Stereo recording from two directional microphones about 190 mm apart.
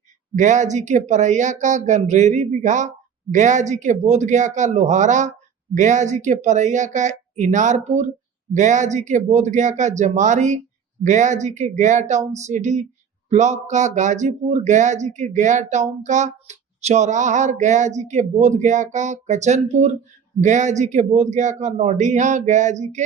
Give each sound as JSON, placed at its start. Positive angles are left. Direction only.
{"t": 0.3, "sound": "speech", "side_deg": -40}